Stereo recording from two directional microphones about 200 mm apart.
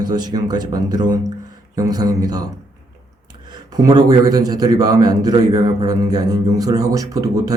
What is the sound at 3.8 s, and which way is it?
Speech, 20° right (ahead or behind).